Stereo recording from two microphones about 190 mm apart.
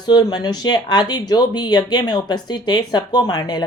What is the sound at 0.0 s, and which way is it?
Speech, 20° left (ahead or behind).